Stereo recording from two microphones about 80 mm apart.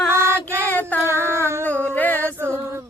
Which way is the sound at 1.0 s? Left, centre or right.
Right.